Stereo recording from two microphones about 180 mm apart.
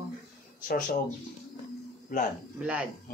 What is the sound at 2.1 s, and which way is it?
Speech, 50° left (ahead or behind).